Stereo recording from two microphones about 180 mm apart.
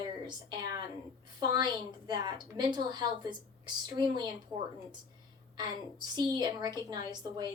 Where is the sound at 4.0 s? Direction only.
20° right (ahead or behind).